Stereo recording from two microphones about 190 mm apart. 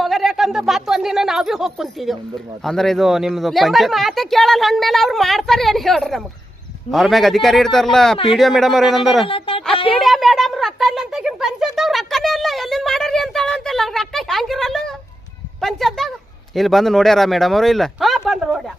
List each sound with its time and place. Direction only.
0.0 s speech: centre (ahead or behind)
9.2 s speech: 30° left (ahead or behind)
9.9 s speech: centre (ahead or behind)